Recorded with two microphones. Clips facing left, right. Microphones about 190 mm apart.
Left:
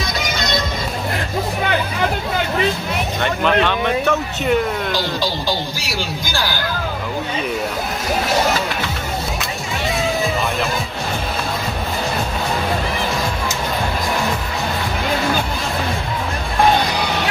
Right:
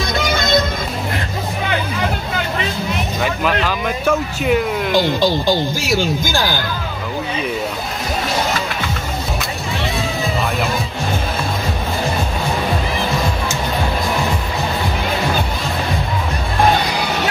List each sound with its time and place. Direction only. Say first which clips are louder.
3.2 s speech: left 2 dB; 5° right (ahead or behind)
5.8 s speech: right 7 dB; 50° right (ahead or behind)